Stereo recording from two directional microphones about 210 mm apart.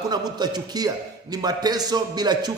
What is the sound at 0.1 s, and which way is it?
A man's voice, 20° right (ahead or behind).